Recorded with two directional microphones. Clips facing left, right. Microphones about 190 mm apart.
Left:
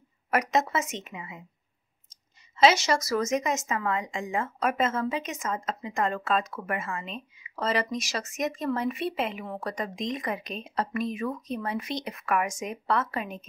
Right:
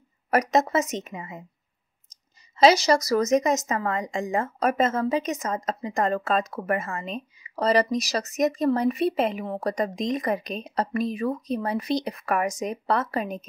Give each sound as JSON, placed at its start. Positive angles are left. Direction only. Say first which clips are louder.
{"t": 0.3, "sound": "speech", "louder": "right 4 dB", "side_deg": -40}
{"t": 2.6, "sound": "speech", "louder": "right 4 dB", "side_deg": -35}